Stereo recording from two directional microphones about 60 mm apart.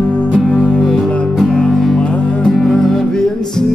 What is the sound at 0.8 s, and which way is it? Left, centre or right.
Music, centre.